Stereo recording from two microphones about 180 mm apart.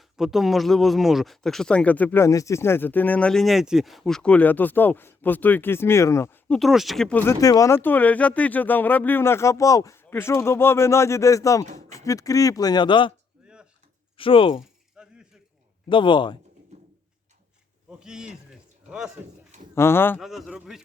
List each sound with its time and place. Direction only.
0.0 s speech: centre (ahead or behind); by 6.6 s 15° left (ahead or behind)
6.6 s speech: centre (ahead or behind); by 13.1 s 25° left (ahead or behind)
14.2 s speech: 30° left (ahead or behind)
14.6 s a sound: 5° right (ahead or behind)
15.9 s speech: 25° left (ahead or behind)
17.8 s speech: 5° right (ahead or behind)
19.7 s speech: 15° left (ahead or behind)
20.1 s speech: centre (ahead or behind)